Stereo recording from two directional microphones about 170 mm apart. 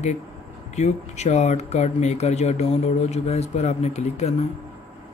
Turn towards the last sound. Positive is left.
turn(degrees=40)  # may be behind; listen again after turning